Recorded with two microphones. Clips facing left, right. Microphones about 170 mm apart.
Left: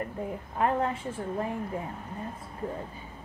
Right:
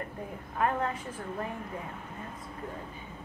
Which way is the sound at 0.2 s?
25° left (ahead or behind).